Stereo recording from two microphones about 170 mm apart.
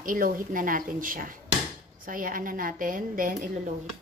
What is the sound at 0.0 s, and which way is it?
A woman's voice, 55° right (ahead or behind).